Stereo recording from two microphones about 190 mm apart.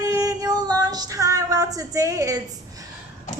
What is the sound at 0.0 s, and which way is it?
Female singing, 20° right (ahead or behind).